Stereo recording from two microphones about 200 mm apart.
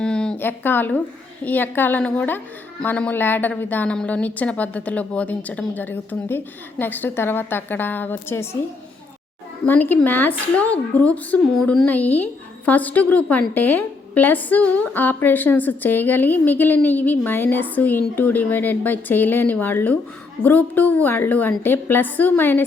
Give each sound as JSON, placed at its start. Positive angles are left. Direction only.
{"t": 0.0, "sound": "a sound", "side_deg": 5}
{"t": 1.5, "sound": "a woman's voice", "side_deg": 10}
{"t": 9.6, "sound": "a woman's voice", "side_deg": 10}